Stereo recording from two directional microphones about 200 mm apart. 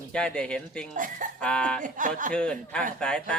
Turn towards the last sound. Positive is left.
turn(degrees=5)  # may be behind; listen again after turning